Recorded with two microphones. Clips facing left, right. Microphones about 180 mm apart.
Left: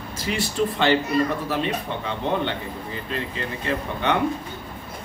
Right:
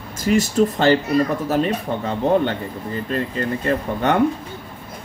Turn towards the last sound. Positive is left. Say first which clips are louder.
# right 4 dB
turn(degrees=-45)  # may be behind; listen again after turning